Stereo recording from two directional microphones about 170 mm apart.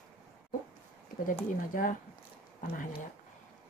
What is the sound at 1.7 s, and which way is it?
Speech, 55° left (ahead or behind).